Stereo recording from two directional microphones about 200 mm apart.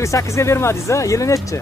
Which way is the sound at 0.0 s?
15° left (ahead or behind).